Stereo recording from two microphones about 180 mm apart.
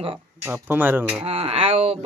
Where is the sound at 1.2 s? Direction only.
35° right (ahead or behind).